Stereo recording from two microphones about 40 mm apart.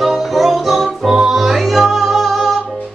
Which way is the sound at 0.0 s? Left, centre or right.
Centre.